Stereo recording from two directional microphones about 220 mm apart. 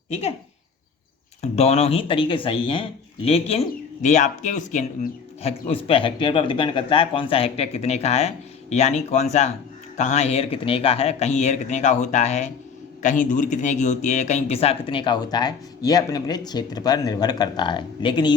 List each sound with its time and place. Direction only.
0.1 s speech: 25° left (ahead or behind)
1.4 s speech: 30° left (ahead or behind)